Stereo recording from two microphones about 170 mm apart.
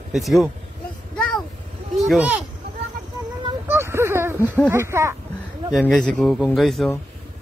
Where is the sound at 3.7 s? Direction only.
15° right (ahead or behind).